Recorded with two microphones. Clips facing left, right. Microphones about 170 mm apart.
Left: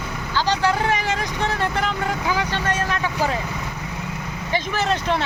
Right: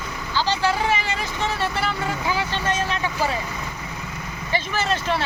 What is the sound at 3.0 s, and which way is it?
Speech, 10° right (ahead or behind).